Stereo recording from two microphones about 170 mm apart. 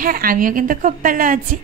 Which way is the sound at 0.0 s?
55° right (ahead or behind).